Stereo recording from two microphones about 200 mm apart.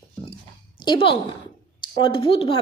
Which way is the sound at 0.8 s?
25° left (ahead or behind).